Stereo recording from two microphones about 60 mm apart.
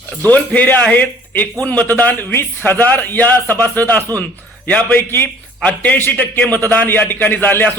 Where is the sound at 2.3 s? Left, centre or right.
Left.